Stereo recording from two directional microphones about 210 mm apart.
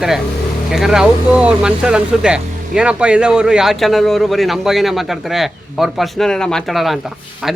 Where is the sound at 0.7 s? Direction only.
Centre (ahead or behind).